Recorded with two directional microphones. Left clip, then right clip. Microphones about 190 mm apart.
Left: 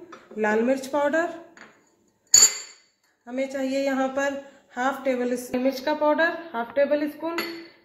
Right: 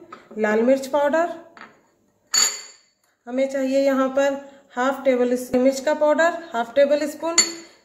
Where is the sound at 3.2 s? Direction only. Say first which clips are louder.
Right 6 dB; 5° right (ahead or behind).